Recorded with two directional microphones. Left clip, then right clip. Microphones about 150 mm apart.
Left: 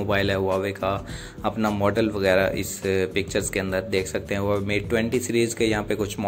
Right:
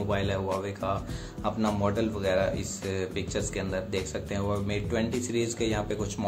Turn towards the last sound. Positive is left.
turn(degrees=25)  # may be behind; listen again after turning